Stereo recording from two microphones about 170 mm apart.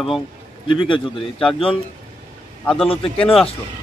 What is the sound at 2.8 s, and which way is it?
Speech, 35° left (ahead or behind).